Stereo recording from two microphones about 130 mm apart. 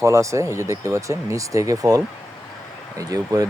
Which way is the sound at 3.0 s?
25° right (ahead or behind).